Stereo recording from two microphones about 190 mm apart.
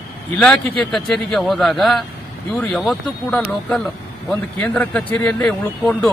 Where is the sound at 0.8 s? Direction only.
5° left (ahead or behind).